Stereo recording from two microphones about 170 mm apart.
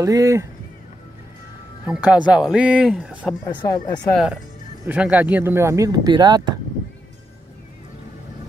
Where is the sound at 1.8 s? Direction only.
5° right (ahead or behind).